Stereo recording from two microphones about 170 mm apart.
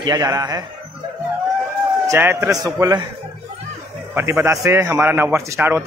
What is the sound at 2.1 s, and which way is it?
Speech, 15° right (ahead or behind).